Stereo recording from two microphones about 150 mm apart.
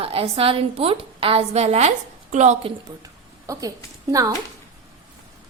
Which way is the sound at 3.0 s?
25° right (ahead or behind).